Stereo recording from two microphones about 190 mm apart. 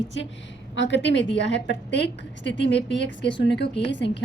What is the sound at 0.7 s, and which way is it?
A woman's voice, 70° left (ahead or behind).